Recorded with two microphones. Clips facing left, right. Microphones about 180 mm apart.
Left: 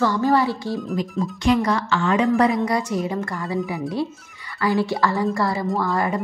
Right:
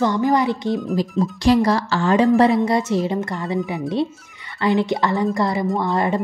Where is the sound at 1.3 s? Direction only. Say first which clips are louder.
Right 3 dB; 35° right (ahead or behind).